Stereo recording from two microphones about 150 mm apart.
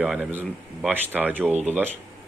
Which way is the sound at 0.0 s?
10° right (ahead or behind).